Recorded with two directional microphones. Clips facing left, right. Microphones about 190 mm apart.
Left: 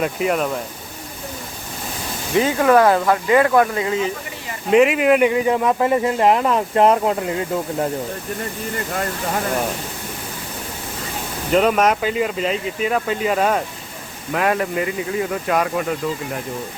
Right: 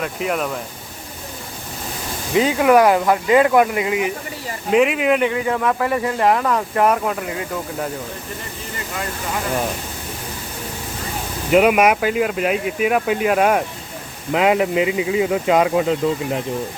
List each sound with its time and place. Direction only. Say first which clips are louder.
0.2 s speech: even; centre (ahead or behind)
2.3 s speech: right 1 dB; 15° right (ahead or behind)
4.7 s speech: left 2 dB; centre (ahead or behind)
5.3 s speech: left 2 dB; 20° left (ahead or behind)
11.5 s speech: right 2 dB; 10° right (ahead or behind)